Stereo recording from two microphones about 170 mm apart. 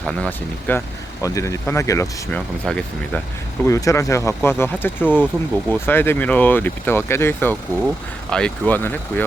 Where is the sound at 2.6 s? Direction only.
5° left (ahead or behind).